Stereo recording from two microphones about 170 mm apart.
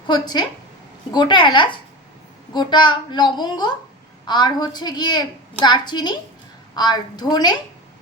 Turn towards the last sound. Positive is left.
turn(degrees=25)  # may be behind; listen again after turning